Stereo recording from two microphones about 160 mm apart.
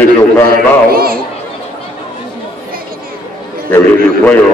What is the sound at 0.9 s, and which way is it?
Speech, 70° right (ahead or behind).